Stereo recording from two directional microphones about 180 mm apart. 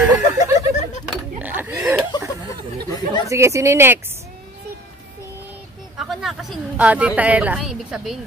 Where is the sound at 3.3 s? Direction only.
15° right (ahead or behind).